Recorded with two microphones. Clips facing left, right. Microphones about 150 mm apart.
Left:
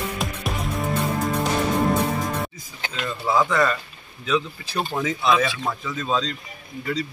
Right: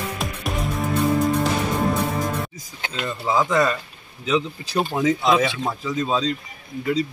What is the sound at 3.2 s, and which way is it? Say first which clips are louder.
Speech: right 1 dB; 15° right (ahead or behind).